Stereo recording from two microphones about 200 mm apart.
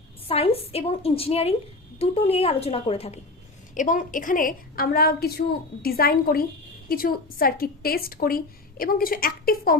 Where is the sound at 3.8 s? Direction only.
40° left (ahead or behind).